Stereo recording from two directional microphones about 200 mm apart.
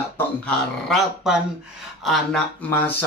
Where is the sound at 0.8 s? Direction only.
Centre (ahead or behind).